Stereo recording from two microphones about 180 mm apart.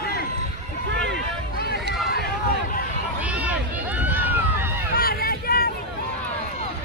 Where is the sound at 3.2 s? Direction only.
5° right (ahead or behind).